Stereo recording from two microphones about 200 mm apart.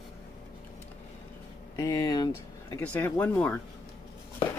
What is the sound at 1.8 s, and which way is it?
Speech, 20° left (ahead or behind).